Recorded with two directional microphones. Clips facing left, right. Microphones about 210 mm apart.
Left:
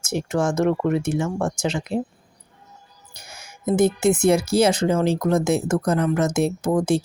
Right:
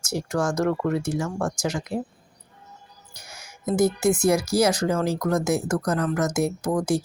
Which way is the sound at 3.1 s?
25° left (ahead or behind).